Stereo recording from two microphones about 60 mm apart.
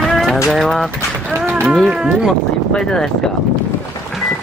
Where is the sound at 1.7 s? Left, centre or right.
Centre.